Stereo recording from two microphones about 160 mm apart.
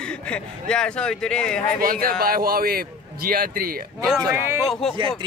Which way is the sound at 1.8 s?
65° right (ahead or behind).